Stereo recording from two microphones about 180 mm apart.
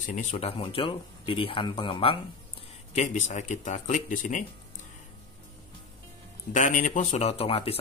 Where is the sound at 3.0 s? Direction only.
40° left (ahead or behind).